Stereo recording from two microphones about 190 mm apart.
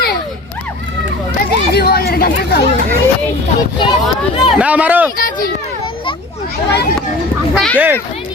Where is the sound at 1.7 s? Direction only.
55° left (ahead or behind).